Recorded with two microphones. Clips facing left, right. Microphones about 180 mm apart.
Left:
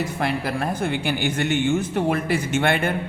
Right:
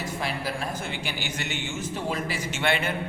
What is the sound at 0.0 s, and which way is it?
A man's voice, 60° left (ahead or behind).